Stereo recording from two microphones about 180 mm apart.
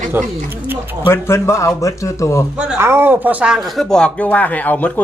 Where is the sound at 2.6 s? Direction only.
10° right (ahead or behind).